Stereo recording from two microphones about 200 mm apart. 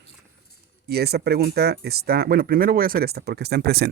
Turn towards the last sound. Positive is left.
turn(degrees=-55)  # may be behind; listen again after turning